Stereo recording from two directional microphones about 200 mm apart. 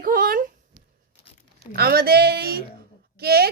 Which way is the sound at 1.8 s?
50° right (ahead or behind).